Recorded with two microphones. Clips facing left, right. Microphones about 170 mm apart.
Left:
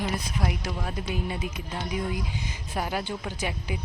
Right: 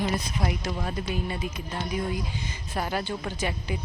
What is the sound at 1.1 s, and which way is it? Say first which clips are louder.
Speech: even; 15° left (ahead or behind).